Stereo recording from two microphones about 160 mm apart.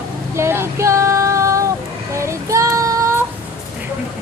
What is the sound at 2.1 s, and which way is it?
Child singing, 20° right (ahead or behind).